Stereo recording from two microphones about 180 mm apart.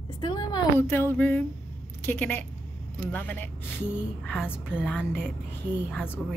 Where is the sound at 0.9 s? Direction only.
10° left (ahead or behind).